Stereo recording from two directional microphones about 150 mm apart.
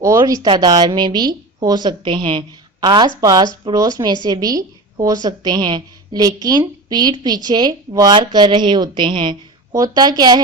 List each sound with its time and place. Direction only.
0.0 s speech: 20° right (ahead or behind)